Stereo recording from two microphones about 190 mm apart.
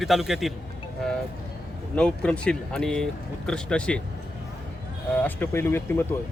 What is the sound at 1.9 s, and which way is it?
Speech, 5° left (ahead or behind).